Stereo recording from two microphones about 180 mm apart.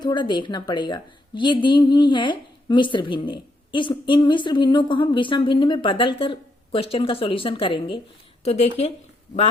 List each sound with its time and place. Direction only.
0.0 s a woman's voice: 25° left (ahead or behind)